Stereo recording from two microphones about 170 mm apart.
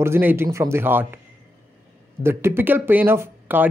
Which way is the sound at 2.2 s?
15° right (ahead or behind).